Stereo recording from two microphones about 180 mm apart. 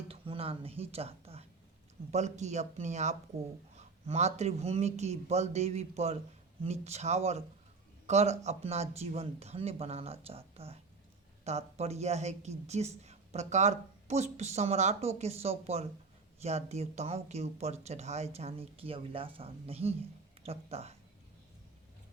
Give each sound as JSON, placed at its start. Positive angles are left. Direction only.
{"t": 0.1, "sound": "speech", "side_deg": -30}